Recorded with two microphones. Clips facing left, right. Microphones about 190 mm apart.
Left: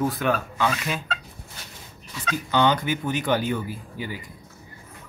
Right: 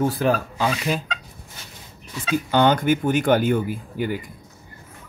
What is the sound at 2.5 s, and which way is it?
Speech, 50° right (ahead or behind).